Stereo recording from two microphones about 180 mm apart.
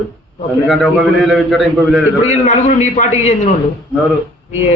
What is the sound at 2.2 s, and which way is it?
A man's voice, 40° left (ahead or behind).